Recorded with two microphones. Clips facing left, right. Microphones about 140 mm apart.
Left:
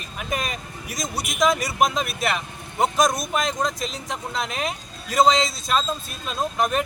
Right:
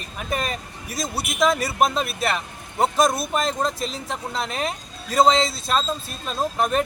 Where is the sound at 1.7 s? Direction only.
Centre (ahead or behind).